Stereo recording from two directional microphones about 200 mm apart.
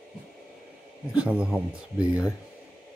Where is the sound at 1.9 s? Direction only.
15° left (ahead or behind).